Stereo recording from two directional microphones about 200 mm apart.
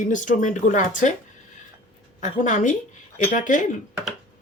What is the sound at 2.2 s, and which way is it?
Speech, 40° left (ahead or behind).